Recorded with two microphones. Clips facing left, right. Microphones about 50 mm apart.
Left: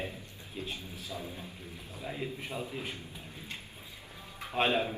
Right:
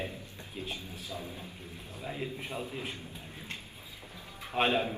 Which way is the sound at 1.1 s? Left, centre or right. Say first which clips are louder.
Even; left.